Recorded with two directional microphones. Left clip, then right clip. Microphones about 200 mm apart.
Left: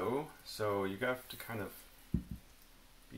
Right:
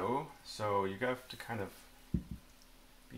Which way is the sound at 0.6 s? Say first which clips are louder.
Right 1 dB; 20° right (ahead or behind).